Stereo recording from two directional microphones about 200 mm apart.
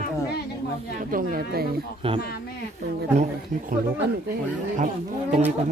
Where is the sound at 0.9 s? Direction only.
45° right (ahead or behind).